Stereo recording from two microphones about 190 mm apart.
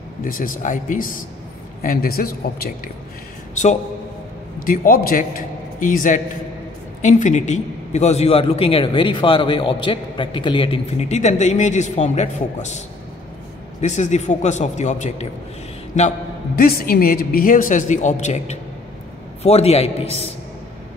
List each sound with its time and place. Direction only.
0.2 s a woman's voice: 45° left (ahead or behind)
4.6 s a woman's voice: 50° left (ahead or behind)
13.7 s a man's voice: 40° left (ahead or behind)
16.5 s a woman's voice: 50° left (ahead or behind); by 20.3 s 30° left (ahead or behind)